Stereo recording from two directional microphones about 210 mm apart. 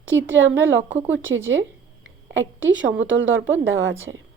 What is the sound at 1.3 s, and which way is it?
A woman's voice, 65° right (ahead or behind).